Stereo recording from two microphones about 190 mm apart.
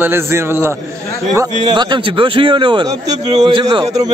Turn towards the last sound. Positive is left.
turn(degrees=-20)  # may be behind; listen again after turning